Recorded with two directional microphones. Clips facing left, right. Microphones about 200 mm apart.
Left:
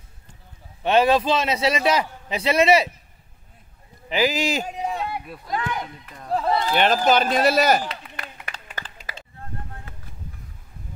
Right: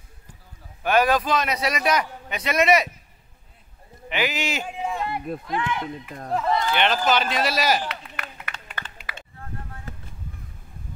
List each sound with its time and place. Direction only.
0.8 s a man's voice: 25° left (ahead or behind)
4.1 s speech: 35° left (ahead or behind); by 7.8 s 55° left (ahead or behind)
7.9 s a sound: 30° left (ahead or behind)